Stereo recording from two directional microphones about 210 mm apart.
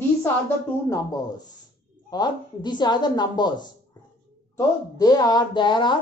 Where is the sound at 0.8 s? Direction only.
15° left (ahead or behind).